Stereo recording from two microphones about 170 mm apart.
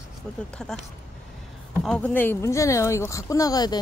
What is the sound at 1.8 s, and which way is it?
Speech, 5° left (ahead or behind).